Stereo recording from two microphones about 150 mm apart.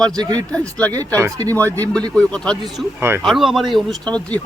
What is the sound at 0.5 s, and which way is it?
Speech, 10° left (ahead or behind).